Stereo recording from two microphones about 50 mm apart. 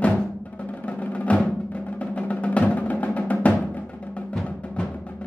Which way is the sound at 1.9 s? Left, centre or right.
Left.